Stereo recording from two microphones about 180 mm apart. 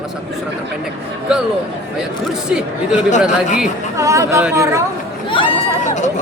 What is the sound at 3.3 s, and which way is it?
Speech, 40° left (ahead or behind).